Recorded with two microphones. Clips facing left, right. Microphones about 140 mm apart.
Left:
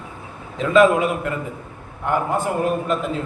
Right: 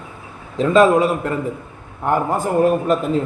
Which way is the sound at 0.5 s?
35° right (ahead or behind).